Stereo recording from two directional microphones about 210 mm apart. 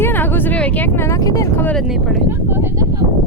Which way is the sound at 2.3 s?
10° right (ahead or behind).